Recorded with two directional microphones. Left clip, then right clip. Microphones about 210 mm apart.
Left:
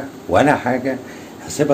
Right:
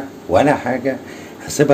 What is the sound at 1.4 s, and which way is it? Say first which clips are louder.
Speech: right 3 dB; 25° right (ahead or behind).